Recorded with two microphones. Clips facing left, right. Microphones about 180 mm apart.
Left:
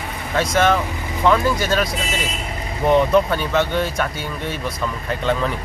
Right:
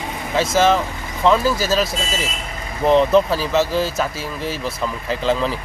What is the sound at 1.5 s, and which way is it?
Speech, 25° right (ahead or behind).